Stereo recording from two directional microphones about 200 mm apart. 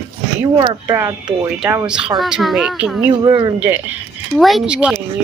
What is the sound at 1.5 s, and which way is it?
A child's voice, 5° right (ahead or behind).